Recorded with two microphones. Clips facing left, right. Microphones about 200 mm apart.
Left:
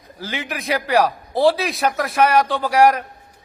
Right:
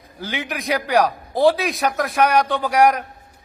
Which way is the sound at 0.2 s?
Centre (ahead or behind).